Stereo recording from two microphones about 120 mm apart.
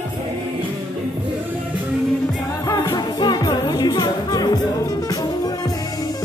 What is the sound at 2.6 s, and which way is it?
Music, 30° left (ahead or behind).